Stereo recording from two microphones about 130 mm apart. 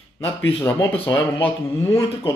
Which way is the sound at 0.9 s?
35° left (ahead or behind).